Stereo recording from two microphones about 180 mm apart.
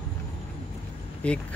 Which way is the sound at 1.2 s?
5° left (ahead or behind).